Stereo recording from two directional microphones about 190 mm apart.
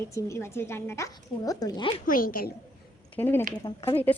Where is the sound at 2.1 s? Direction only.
50° left (ahead or behind).